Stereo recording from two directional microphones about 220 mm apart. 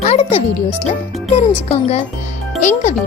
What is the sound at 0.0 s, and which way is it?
Music, 30° left (ahead or behind).